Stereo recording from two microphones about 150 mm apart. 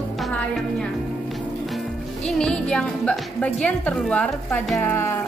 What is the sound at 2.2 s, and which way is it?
A woman's voice, 5° left (ahead or behind).